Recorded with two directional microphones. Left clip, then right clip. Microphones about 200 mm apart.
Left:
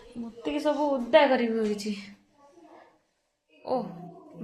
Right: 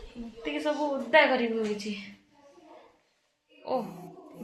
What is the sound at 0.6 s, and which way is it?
A woman's voice, 30° left (ahead or behind).